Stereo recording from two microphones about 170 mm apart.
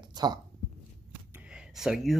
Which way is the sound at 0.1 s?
25° right (ahead or behind).